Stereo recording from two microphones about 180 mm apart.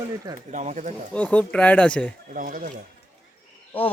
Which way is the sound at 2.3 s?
50° right (ahead or behind).